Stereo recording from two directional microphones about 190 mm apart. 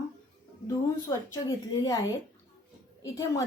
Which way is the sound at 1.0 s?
15° left (ahead or behind).